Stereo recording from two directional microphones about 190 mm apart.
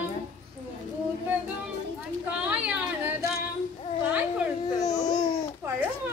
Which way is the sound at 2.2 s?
5° right (ahead or behind).